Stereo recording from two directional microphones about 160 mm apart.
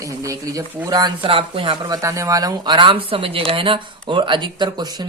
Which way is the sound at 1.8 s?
20° right (ahead or behind).